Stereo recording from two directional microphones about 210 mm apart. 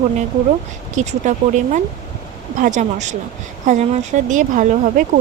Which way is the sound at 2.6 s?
35° right (ahead or behind).